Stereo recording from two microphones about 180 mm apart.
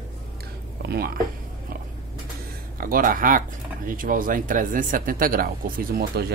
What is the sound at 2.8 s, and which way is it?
Speech, 50° right (ahead or behind).